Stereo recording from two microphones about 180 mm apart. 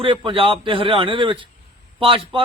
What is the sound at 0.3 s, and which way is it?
Speech, 30° right (ahead or behind).